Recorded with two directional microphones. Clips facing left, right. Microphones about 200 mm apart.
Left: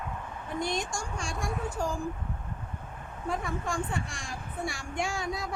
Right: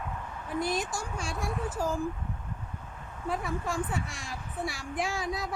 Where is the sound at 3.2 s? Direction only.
5° right (ahead or behind).